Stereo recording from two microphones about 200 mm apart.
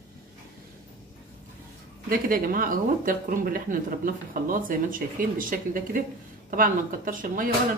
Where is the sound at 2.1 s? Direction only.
45° right (ahead or behind).